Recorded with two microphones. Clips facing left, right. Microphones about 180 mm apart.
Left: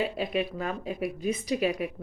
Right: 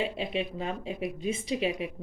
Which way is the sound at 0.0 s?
25° right (ahead or behind).